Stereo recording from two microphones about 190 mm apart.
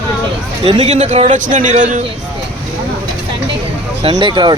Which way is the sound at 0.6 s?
35° right (ahead or behind).